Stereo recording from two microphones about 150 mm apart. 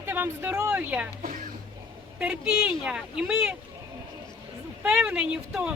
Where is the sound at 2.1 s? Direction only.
5° right (ahead or behind).